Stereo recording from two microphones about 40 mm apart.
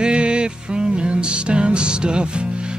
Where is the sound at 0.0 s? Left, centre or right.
Right.